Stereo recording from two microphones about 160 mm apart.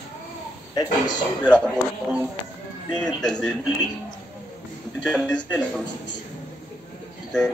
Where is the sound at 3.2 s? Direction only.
5° left (ahead or behind).